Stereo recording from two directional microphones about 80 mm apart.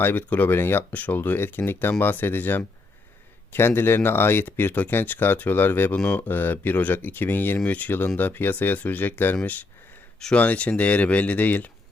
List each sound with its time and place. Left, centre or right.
0.0 s speech: left
10.2 s speech: centre